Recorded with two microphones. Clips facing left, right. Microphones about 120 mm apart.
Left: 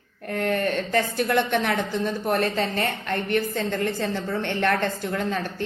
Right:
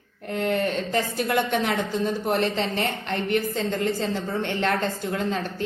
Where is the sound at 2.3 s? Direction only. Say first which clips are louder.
Left 2 dB; 25° right (ahead or behind).